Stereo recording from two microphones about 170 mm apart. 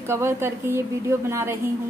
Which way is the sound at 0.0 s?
15° right (ahead or behind).